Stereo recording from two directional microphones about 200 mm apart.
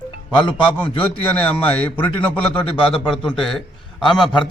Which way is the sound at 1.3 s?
10° left (ahead or behind).